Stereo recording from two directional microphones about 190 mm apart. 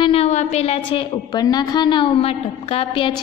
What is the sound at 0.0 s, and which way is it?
A woman's voice, 30° left (ahead or behind).